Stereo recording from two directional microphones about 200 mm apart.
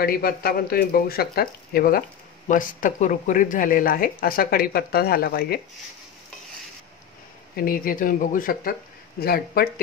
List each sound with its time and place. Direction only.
0.0 s speech: 50° left (ahead or behind)
7.5 s speech: 45° left (ahead or behind)